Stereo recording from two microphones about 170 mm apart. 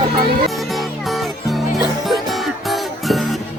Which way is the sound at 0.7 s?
Centre (ahead or behind).